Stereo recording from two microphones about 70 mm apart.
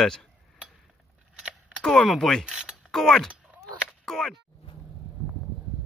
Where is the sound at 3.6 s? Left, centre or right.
Centre.